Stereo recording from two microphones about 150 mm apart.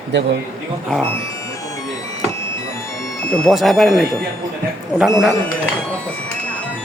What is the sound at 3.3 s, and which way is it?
Speech, centre (ahead or behind).